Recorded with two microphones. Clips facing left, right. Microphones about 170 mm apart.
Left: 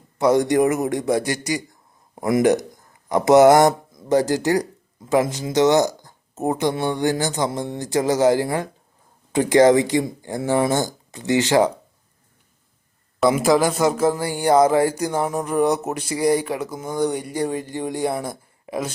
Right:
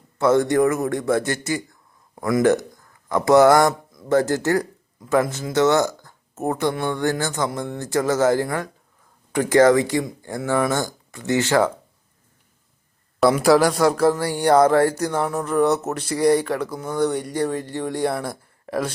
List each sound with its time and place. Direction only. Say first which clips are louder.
0.2 s speech: even; 20° left (ahead or behind)
13.1 s speech: right 1 dB; centre (ahead or behind)